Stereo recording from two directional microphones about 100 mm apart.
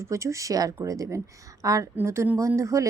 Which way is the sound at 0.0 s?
30° right (ahead or behind).